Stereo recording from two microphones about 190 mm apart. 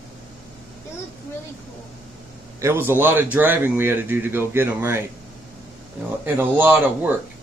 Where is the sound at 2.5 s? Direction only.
15° right (ahead or behind).